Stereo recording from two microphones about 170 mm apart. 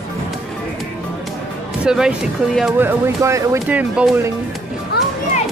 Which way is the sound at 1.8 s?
5° right (ahead or behind).